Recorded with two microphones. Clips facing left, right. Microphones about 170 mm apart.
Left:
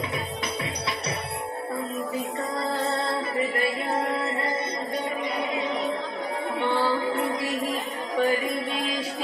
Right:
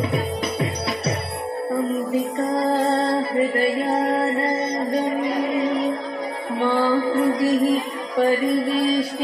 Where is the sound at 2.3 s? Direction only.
40° right (ahead or behind).